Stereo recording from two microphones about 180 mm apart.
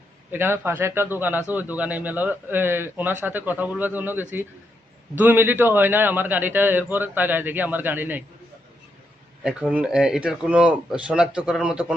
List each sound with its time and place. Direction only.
0.3 s a man's voice: 10° right (ahead or behind)
9.4 s speech: 5° right (ahead or behind)